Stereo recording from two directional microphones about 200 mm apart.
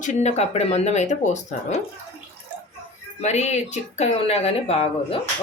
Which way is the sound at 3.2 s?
35° left (ahead or behind).